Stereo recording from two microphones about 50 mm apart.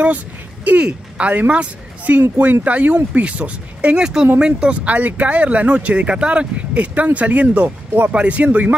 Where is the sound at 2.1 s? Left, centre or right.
Right.